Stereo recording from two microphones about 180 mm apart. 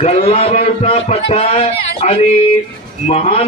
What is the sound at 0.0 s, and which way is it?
A man's voice, 35° left (ahead or behind).